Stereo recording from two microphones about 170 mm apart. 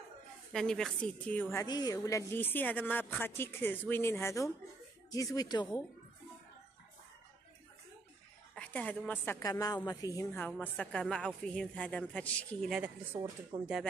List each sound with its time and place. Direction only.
0.5 s a woman's voice: 5° left (ahead or behind); by 5.7 s 20° left (ahead or behind)
8.5 s a woman's voice: 10° left (ahead or behind)
12.7 s speech: 10° right (ahead or behind)
13.5 s speech: 30° right (ahead or behind)